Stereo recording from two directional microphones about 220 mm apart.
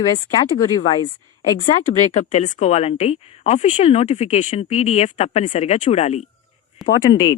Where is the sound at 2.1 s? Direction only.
30° left (ahead or behind).